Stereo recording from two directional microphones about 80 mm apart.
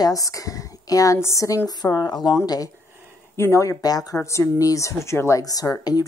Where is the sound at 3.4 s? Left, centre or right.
Left.